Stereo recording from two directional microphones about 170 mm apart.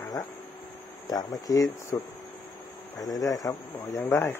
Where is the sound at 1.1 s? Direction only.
20° left (ahead or behind).